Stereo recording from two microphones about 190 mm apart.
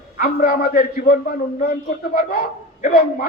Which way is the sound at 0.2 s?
45° left (ahead or behind).